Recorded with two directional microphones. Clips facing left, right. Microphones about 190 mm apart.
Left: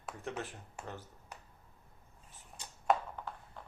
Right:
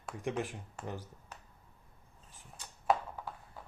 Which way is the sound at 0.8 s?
10° left (ahead or behind).